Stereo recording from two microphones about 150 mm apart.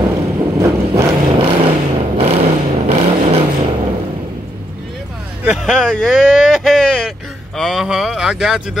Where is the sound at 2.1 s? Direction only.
40° right (ahead or behind).